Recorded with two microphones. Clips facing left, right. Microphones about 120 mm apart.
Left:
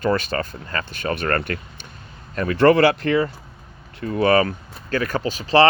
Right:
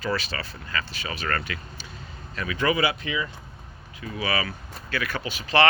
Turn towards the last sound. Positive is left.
turn(degrees=40)  # may be behind; listen again after turning